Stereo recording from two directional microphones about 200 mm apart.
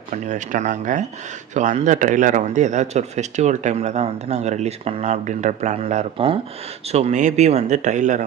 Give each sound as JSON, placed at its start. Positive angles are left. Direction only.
{"t": 0.1, "sound": "speech", "side_deg": -40}